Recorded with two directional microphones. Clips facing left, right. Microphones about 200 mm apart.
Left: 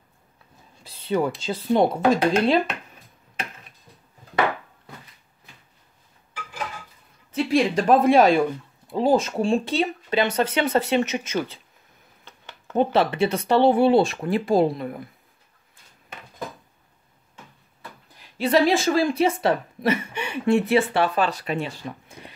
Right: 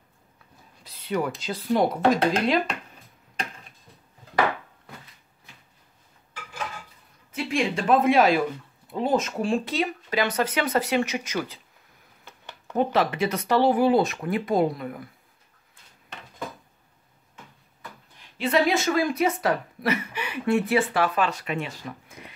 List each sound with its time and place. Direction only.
0.8 s a woman's voice: 30° left (ahead or behind)
7.3 s a woman's voice: 35° left (ahead or behind)
12.7 s a woman's voice: 30° left (ahead or behind)
18.4 s a woman's voice: 35° left (ahead or behind)